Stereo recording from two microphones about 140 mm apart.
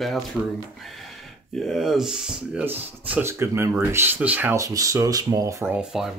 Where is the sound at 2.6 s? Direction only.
15° right (ahead or behind).